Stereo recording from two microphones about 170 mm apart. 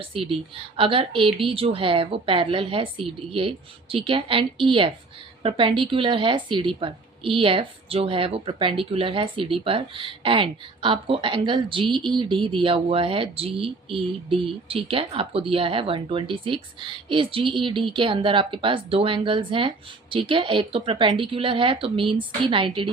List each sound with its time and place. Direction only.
0.0 s speech: 35° right (ahead or behind)